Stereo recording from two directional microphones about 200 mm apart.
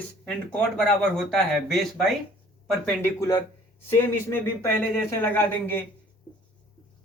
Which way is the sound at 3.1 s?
15° left (ahead or behind).